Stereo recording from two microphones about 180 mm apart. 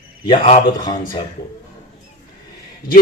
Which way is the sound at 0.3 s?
30° left (ahead or behind).